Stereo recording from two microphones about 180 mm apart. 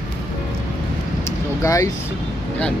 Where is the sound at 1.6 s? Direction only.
20° left (ahead or behind).